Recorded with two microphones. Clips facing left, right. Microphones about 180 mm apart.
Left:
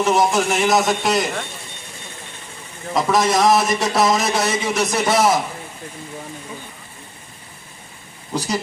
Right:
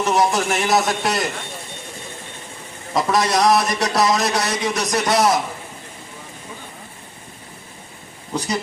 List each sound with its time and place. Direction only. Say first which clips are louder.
0.0 s a man's voice: left 1 dB; centre (ahead or behind)
2.9 s a man's voice: left 1 dB; centre (ahead or behind)